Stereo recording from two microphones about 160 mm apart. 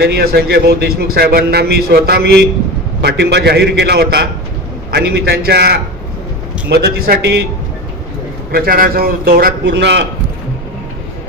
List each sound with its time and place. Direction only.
0.0 s a man's voice: 75° right (ahead or behind)
8.5 s a man's voice: 70° right (ahead or behind); by 10.0 s 90° right